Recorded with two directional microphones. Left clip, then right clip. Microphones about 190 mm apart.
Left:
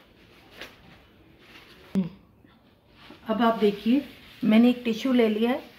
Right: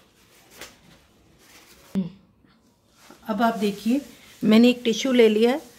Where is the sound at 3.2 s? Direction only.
70° right (ahead or behind).